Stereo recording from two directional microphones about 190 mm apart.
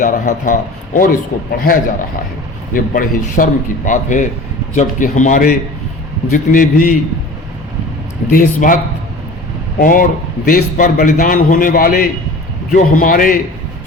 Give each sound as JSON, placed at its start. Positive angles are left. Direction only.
{"t": 0.0, "sound": "a man's voice", "side_deg": 45}
{"t": 8.3, "sound": "a man's voice", "side_deg": 45}
{"t": 9.8, "sound": "a man's voice", "side_deg": 45}